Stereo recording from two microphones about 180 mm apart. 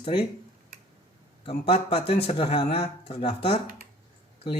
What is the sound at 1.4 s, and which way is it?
Speech, 30° left (ahead or behind).